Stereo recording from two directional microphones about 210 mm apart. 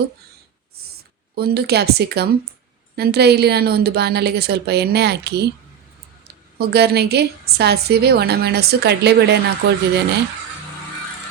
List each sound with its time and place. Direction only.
1.4 s a woman's voice: 50° right (ahead or behind)
6.6 s a woman's voice: 50° right (ahead or behind)